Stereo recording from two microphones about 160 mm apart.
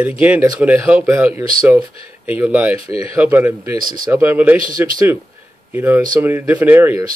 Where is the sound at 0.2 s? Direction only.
10° right (ahead or behind).